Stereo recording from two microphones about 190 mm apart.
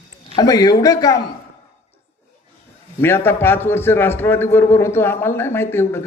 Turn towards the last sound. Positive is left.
turn(degrees=10)  # may be behind; listen again after turning